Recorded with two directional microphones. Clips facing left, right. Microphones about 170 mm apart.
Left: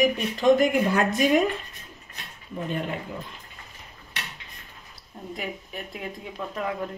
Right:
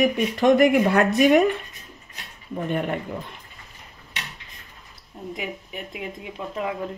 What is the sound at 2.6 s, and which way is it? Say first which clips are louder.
Speech: right 4 dB; 60° right (ahead or behind).